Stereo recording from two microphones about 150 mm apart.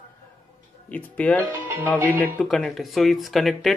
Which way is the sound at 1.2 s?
10° left (ahead or behind).